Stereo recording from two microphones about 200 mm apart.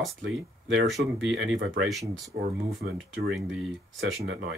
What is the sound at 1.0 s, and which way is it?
Speech, 45° right (ahead or behind).